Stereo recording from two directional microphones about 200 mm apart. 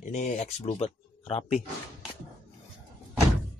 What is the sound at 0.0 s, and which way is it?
Speech, 35° left (ahead or behind).